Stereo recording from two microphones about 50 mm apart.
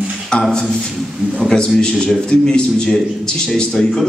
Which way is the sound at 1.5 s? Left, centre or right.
Centre.